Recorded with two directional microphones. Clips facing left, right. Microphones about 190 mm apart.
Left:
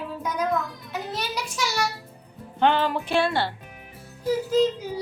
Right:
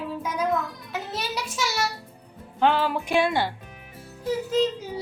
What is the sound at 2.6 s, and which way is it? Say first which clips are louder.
Speech: even; 5° right (ahead or behind).